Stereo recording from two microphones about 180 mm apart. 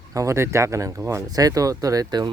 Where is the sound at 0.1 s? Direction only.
15° right (ahead or behind).